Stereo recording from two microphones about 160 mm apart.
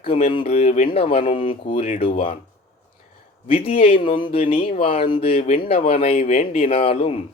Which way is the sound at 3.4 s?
35° left (ahead or behind).